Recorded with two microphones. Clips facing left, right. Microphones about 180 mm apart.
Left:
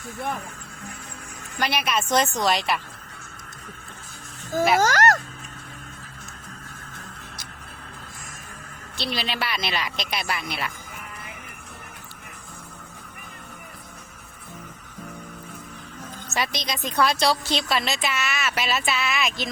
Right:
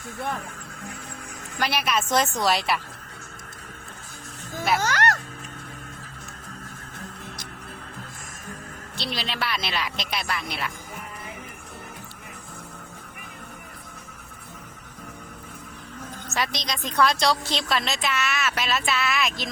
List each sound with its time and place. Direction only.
1.5 s a woman's voice: centre (ahead or behind)
4.7 s speech: 45° left (ahead or behind)
9.0 s a woman's voice: centre (ahead or behind)
16.3 s a woman's voice: centre (ahead or behind)